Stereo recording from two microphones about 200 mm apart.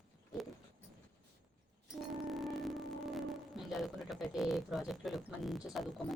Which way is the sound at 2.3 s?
Centre (ahead or behind).